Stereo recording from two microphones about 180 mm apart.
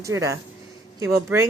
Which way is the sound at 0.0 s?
15° right (ahead or behind).